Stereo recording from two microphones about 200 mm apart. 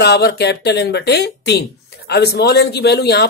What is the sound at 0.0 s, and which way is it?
Speech, 55° left (ahead or behind).